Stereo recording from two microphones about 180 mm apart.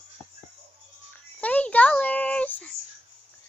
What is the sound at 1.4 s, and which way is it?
A child's voice, 10° left (ahead or behind).